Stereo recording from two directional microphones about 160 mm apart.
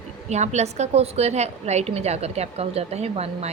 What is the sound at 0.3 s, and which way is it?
A woman's voice, 45° right (ahead or behind).